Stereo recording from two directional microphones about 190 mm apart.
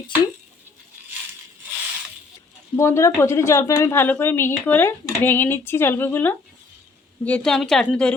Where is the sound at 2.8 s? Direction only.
15° left (ahead or behind).